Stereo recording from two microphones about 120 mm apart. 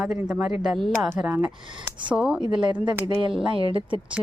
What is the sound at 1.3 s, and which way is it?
Speech, 15° right (ahead or behind).